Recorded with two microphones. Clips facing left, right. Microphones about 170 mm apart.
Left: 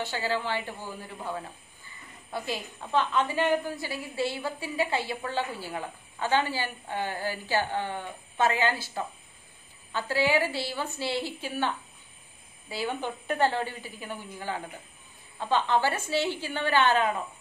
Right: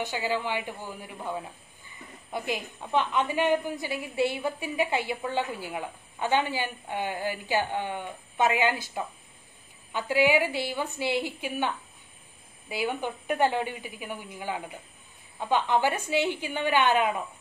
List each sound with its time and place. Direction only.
0.0 s a woman's voice: 15° right (ahead or behind)